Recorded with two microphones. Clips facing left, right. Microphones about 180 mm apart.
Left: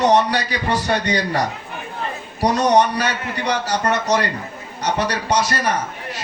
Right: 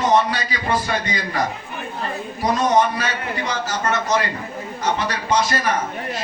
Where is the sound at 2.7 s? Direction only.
70° left (ahead or behind).